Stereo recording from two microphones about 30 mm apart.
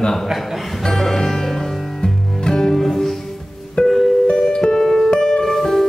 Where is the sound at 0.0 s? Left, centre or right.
Centre.